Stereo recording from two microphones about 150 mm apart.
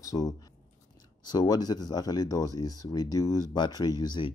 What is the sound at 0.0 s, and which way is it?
A man's voice, 25° left (ahead or behind).